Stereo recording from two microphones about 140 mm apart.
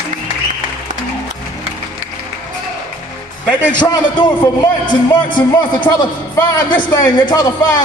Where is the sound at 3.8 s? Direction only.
35° left (ahead or behind).